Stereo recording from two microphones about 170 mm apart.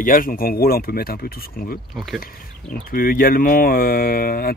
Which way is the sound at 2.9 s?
55° left (ahead or behind).